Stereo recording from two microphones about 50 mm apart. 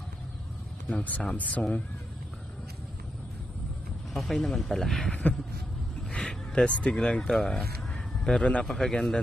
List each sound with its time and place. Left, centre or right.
0.8 s speech: left
4.1 s a man's voice: centre; by 8.6 s left
8.6 s a man's voice: centre